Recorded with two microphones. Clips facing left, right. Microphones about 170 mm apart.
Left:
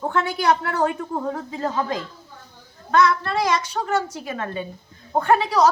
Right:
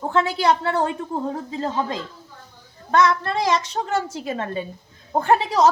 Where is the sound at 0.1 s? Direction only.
30° right (ahead or behind).